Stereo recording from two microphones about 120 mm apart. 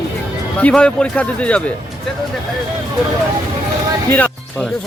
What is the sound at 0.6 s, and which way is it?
Speech, 10° left (ahead or behind).